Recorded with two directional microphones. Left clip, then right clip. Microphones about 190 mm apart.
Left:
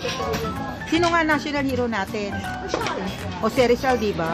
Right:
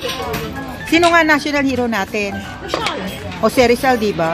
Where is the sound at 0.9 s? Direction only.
15° right (ahead or behind).